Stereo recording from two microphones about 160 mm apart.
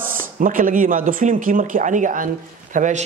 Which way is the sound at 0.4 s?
55° right (ahead or behind).